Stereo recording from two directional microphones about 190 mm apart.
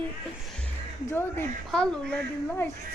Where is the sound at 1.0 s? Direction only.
10° left (ahead or behind).